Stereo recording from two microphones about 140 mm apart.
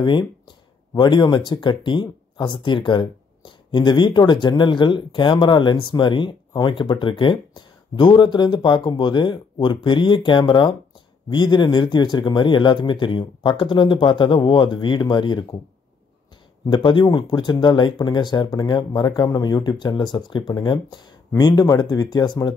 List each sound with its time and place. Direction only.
0.0 s speech: 35° left (ahead or behind)
16.6 s speech: 35° left (ahead or behind)